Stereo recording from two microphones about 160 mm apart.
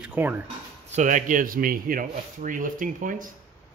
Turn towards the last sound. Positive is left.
turn(degrees=-55)  # may be behind; listen again after turning